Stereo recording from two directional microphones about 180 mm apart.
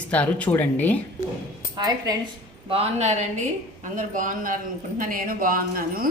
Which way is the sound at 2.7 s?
35° right (ahead or behind).